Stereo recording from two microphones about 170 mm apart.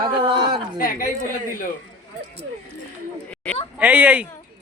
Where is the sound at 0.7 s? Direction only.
55° left (ahead or behind).